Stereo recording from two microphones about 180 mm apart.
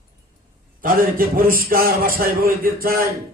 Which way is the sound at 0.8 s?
50° right (ahead or behind).